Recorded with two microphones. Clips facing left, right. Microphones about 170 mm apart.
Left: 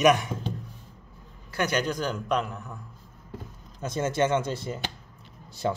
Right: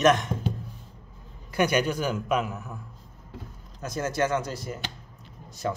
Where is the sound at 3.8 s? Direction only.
25° left (ahead or behind).